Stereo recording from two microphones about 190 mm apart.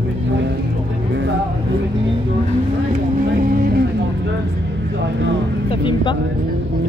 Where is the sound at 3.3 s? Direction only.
50° right (ahead or behind).